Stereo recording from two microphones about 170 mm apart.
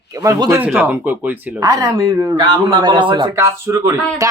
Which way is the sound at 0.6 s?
10° right (ahead or behind).